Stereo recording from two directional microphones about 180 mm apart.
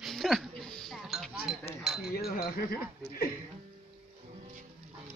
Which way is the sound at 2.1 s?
55° left (ahead or behind).